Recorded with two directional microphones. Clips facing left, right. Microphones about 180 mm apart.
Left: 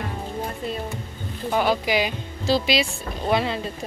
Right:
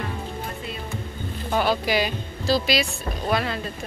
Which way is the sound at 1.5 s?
15° left (ahead or behind).